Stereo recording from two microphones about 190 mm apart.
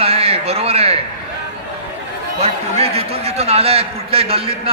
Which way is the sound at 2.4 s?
30° right (ahead or behind).